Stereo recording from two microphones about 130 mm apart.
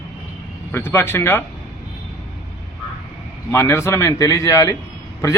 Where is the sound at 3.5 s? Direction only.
20° left (ahead or behind).